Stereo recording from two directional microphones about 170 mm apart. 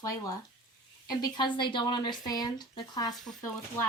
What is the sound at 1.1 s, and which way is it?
Speech, 25° left (ahead or behind).